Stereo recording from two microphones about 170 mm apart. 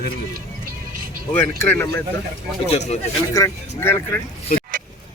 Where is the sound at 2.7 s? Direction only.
40° left (ahead or behind).